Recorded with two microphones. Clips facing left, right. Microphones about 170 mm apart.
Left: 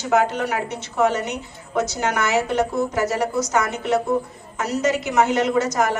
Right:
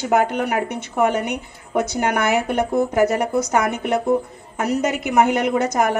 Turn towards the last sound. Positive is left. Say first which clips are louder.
# right 1 dB
turn(degrees=-55)  # may be behind; listen again after turning